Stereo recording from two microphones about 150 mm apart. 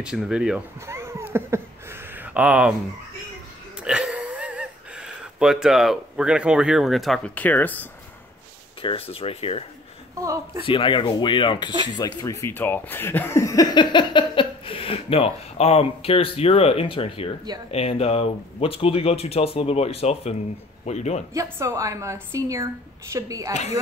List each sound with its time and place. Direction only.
0.0 s speech: 5° right (ahead or behind)
0.8 s a sound: 20° right (ahead or behind)
3.8 s speech: 5° right (ahead or behind); by 7.9 s 10° left (ahead or behind)
8.8 s speech: 40° left (ahead or behind)
10.1 s a woman's voice: 20° right (ahead or behind)
10.6 s speech: 35° left (ahead or behind)
12.2 s a man's voice: 20° left (ahead or behind); by 21.2 s 50° left (ahead or behind)
21.3 s a woman's voice: 20° right (ahead or behind)
23.5 s a man's voice: 50° left (ahead or behind)